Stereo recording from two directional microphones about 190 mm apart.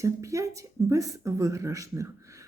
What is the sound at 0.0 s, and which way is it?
Speech, 15° right (ahead or behind).